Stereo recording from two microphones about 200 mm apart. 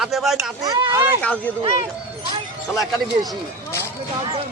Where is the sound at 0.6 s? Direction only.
20° right (ahead or behind).